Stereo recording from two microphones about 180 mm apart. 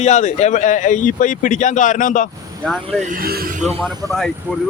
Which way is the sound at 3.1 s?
55° right (ahead or behind).